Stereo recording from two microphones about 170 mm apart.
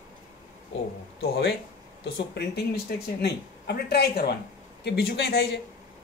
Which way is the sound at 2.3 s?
70° left (ahead or behind).